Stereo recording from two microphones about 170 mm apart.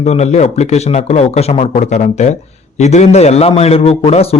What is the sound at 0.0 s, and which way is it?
A man's voice, 40° left (ahead or behind).